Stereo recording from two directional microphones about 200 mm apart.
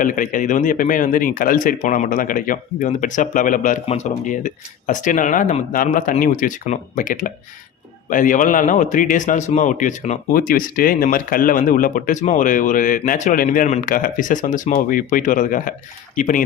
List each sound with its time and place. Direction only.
0.0 s a man's voice: 40° left (ahead or behind)